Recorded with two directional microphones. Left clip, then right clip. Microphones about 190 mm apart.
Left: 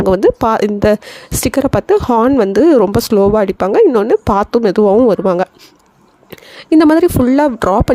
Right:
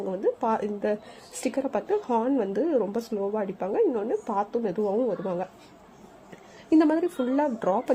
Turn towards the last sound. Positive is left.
turn(degrees=50)  # may be behind; listen again after turning